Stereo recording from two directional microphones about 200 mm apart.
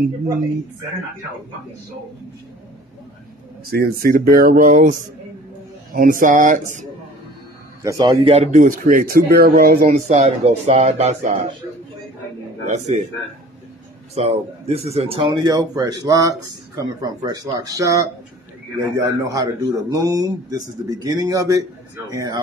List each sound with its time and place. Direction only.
3.6 s speech: 50° right (ahead or behind)
5.9 s speech: 45° right (ahead or behind)
7.8 s speech: 20° right (ahead or behind); by 11.5 s 35° right (ahead or behind)
12.6 s speech: 35° right (ahead or behind)
14.1 s a man's voice: 30° right (ahead or behind)